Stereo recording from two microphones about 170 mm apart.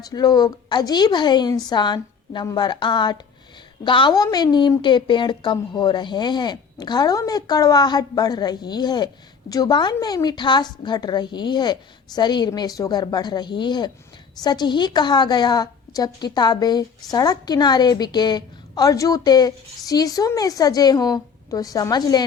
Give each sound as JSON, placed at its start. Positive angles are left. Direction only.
{"t": 0.0, "sound": "a woman's voice", "side_deg": 20}